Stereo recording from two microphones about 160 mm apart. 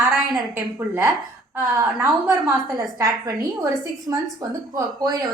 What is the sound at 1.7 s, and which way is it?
A woman's voice, 25° right (ahead or behind).